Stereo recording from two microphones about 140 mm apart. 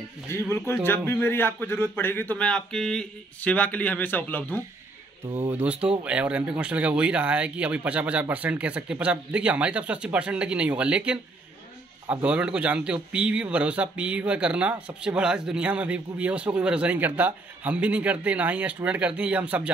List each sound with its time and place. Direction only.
0.3 s a man's voice: 20° left (ahead or behind)
5.5 s a man's voice: 10° right (ahead or behind)